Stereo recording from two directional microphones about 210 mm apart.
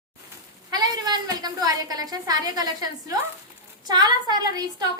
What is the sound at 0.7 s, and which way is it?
A woman's voice, 20° right (ahead or behind).